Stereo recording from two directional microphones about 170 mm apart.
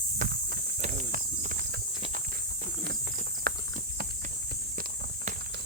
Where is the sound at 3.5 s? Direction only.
60° right (ahead or behind).